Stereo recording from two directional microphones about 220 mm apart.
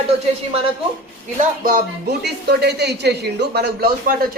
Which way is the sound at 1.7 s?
45° right (ahead or behind).